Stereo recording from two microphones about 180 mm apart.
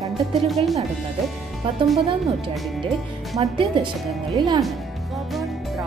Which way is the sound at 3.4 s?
25° right (ahead or behind).